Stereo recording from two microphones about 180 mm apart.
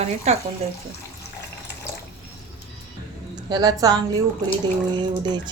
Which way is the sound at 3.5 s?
20° right (ahead or behind).